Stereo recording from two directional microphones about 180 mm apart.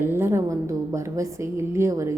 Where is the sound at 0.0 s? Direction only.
15° right (ahead or behind).